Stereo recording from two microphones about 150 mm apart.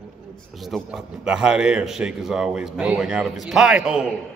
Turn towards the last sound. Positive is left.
turn(degrees=-5)  # may be behind; listen again after turning